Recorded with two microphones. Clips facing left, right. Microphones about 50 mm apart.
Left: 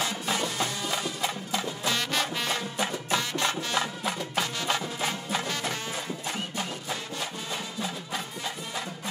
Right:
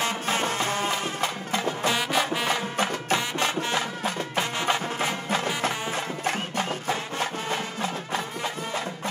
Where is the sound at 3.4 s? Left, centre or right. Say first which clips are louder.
Right 2 dB; right.